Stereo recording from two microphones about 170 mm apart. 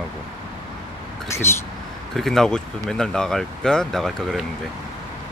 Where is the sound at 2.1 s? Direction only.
Centre (ahead or behind).